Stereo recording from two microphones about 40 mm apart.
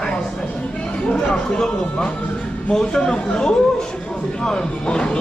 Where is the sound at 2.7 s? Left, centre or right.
Centre.